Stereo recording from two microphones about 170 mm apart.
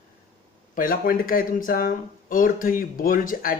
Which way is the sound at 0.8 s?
60° left (ahead or behind).